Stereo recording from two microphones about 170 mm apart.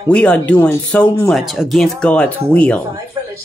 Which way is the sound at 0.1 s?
5° left (ahead or behind).